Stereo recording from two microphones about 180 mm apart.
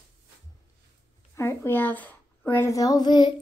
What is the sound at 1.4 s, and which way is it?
Speech, 15° left (ahead or behind).